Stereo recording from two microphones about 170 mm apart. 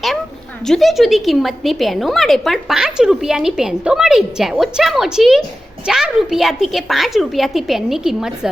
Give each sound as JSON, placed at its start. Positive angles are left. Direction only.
{"t": 0.7, "sound": "a woman's voice", "side_deg": 0}